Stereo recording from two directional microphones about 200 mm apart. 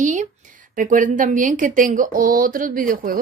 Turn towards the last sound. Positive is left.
turn(degrees=-45)  # may be behind; listen again after turning